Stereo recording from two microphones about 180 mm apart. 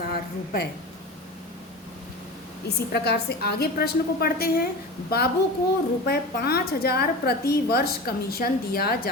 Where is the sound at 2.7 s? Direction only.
65° left (ahead or behind).